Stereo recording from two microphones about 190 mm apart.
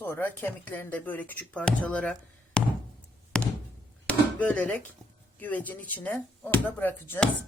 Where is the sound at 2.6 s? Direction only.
5° left (ahead or behind).